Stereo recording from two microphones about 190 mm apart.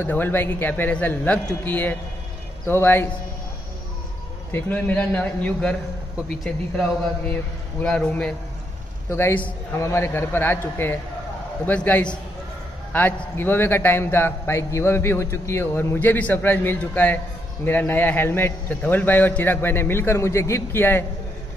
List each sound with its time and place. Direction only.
0.0 s a man's voice: 10° left (ahead or behind)
4.5 s a man's voice: 10° left (ahead or behind)
7.8 s a man's voice: 5° left (ahead or behind)